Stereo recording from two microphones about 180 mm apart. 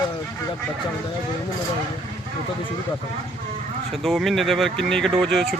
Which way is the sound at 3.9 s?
Centre (ahead or behind).